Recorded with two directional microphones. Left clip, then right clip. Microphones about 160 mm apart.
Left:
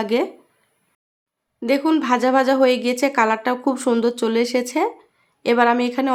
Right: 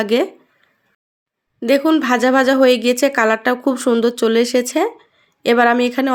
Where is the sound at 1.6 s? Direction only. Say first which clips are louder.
Right 4 dB; 20° right (ahead or behind).